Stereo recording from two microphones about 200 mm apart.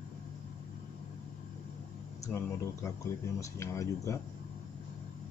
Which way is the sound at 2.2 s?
15° left (ahead or behind).